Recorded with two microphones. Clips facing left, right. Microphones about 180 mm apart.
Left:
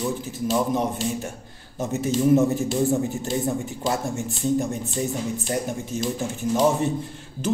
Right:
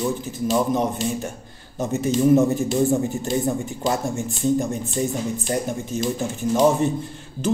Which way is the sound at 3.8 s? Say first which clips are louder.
Right 3 dB; 5° left (ahead or behind).